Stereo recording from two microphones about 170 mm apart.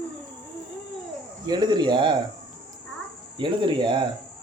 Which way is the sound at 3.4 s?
30° right (ahead or behind).